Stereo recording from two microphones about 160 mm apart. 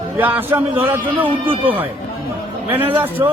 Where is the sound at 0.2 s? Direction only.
10° right (ahead or behind).